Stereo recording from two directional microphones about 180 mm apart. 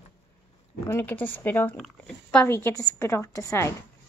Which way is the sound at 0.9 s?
10° left (ahead or behind).